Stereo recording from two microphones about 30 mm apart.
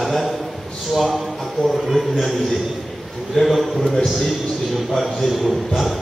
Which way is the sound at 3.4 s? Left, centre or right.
Centre.